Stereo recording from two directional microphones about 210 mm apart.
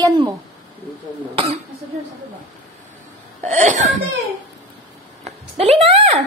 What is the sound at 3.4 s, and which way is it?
Speech, 35° right (ahead or behind).